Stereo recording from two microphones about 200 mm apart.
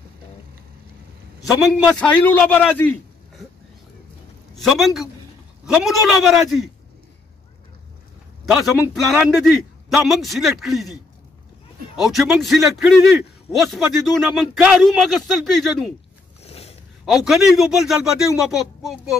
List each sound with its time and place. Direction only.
1.9 s a man's voice: 5° left (ahead or behind)
4.6 s a man's voice: centre (ahead or behind)
8.5 s a man's voice: centre (ahead or behind)
12.0 s a man's voice: centre (ahead or behind)
16.4 s a sound: 30° left (ahead or behind)
17.0 s a man's voice: centre (ahead or behind)